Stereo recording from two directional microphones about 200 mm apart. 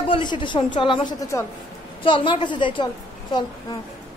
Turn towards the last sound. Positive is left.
turn(degrees=20)  # may be behind; listen again after turning